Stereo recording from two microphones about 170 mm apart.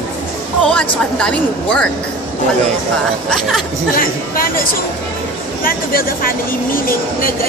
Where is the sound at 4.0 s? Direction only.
55° left (ahead or behind).